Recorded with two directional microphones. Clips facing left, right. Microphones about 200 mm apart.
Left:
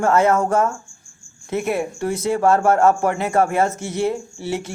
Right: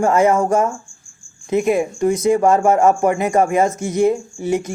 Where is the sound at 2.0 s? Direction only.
15° right (ahead or behind).